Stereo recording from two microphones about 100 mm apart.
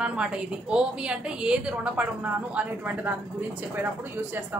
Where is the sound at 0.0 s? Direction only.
10° right (ahead or behind).